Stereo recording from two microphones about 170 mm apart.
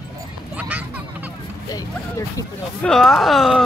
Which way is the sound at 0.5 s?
10° right (ahead or behind).